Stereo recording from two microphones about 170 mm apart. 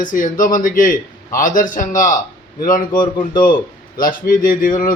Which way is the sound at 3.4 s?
55° left (ahead or behind).